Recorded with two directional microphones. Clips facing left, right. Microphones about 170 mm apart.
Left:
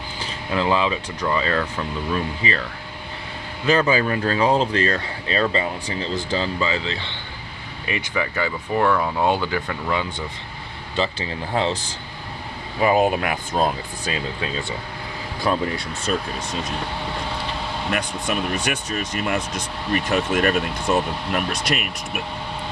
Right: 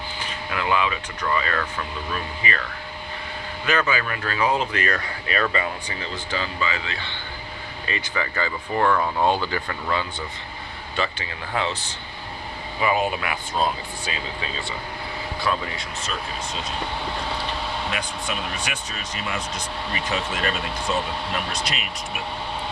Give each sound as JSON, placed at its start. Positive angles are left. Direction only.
{"t": 0.5, "sound": "speech", "side_deg": 25}
{"t": 3.7, "sound": "speech", "side_deg": 30}
{"t": 7.9, "sound": "speech", "side_deg": 15}
{"t": 10.9, "sound": "speech", "side_deg": 25}
{"t": 11.7, "sound": "speech", "side_deg": 90}
{"t": 12.8, "sound": "speech", "side_deg": 45}
{"t": 15.5, "sound": "speech", "side_deg": 35}
{"t": 17.9, "sound": "speech", "side_deg": 45}